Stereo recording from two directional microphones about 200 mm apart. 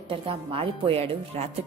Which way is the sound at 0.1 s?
25° right (ahead or behind).